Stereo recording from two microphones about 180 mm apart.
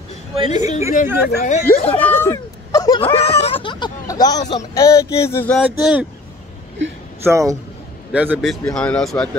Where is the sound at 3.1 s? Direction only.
35° left (ahead or behind); by 5.5 s 15° left (ahead or behind).